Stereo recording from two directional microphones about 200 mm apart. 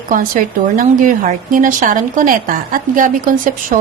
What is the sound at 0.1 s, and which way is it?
A woman's voice, 45° right (ahead or behind).